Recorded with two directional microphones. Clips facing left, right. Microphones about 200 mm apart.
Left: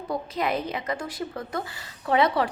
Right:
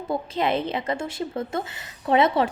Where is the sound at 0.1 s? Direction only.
25° right (ahead or behind).